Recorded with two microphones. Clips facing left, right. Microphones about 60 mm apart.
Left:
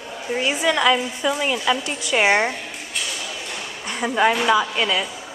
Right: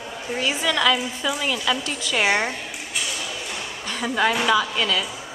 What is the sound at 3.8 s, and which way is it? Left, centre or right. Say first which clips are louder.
Speech: left 3 dB; centre.